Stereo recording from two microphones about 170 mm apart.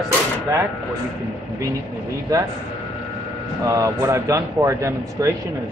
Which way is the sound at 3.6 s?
20° right (ahead or behind).